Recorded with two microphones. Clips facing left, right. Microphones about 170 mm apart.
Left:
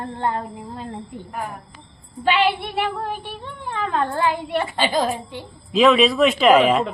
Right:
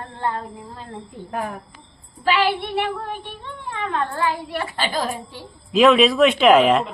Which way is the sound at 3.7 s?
30° left (ahead or behind).